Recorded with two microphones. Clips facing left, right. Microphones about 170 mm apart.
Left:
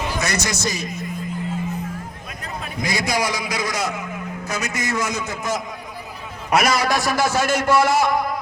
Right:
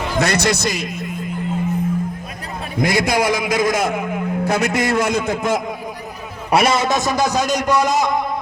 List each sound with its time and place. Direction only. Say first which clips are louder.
0.2 s a man's voice: right 10 dB; 60° right (ahead or behind)
2.8 s a man's voice: right 6 dB; 55° right (ahead or behind)
6.5 s a man's voice: right 3 dB; 30° right (ahead or behind)